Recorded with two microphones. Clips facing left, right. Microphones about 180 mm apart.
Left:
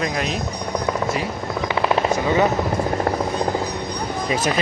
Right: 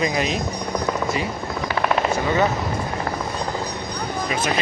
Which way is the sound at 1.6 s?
20° left (ahead or behind).